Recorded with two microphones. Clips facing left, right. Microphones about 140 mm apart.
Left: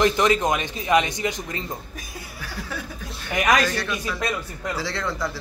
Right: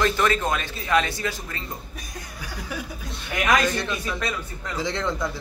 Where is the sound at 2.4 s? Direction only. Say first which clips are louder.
Even; 15° right (ahead or behind).